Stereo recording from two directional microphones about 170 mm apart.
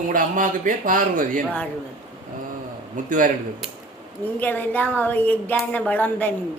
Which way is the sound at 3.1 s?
50° right (ahead or behind).